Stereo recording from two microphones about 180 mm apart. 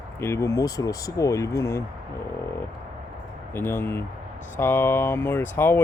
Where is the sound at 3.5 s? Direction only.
10° left (ahead or behind).